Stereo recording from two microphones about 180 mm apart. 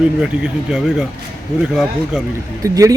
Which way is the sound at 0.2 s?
5° right (ahead or behind).